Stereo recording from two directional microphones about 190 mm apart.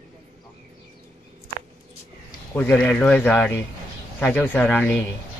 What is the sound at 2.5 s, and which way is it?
Speech, 10° left (ahead or behind).